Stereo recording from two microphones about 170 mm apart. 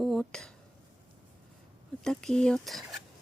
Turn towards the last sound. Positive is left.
turn(degrees=0)  # may be behind; listen again after turning